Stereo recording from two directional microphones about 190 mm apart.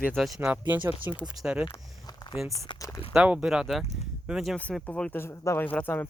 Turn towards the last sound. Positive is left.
turn(degrees=10)  # may be behind; listen again after turning